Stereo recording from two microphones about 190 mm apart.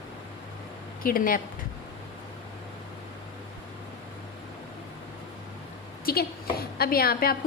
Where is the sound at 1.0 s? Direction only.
50° left (ahead or behind).